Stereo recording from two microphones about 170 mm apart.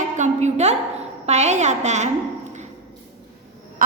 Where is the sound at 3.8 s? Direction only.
55° right (ahead or behind).